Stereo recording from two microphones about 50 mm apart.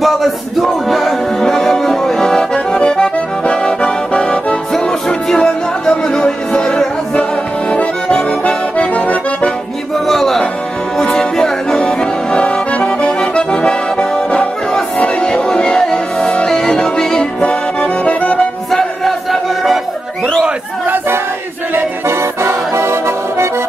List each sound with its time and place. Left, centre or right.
0.0 s music: centre
4.7 s music: centre
7.7 s accordion: left
9.9 s music: centre
17.4 s accordion: left
18.7 s music: centre
21.7 s accordion: right